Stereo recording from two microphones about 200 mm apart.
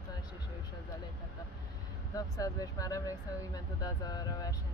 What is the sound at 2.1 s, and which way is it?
A woman's voice, 15° left (ahead or behind).